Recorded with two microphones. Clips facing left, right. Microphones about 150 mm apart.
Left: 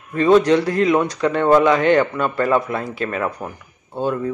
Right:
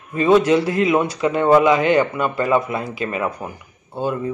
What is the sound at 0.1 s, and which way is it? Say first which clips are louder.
Speech: left 1 dB; 5° right (ahead or behind).